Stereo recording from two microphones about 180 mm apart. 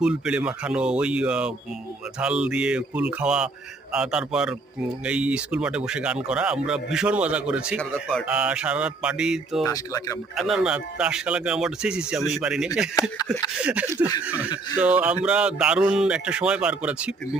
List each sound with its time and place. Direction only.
0.0 s speech: 5° right (ahead or behind)
9.6 s speech: 20° left (ahead or behind)
10.3 s speech: centre (ahead or behind)